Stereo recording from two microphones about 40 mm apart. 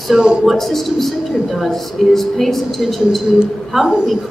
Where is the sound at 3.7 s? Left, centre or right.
Centre.